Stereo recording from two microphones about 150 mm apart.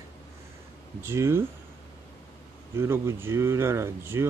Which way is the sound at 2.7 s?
15° right (ahead or behind).